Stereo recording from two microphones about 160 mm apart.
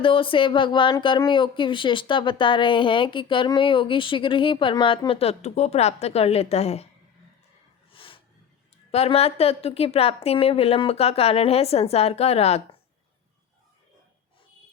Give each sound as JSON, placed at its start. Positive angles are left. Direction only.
{"t": 0.0, "sound": "speech", "side_deg": 35}
{"t": 7.9, "sound": "snort", "side_deg": 35}
{"t": 8.9, "sound": "speech", "side_deg": 40}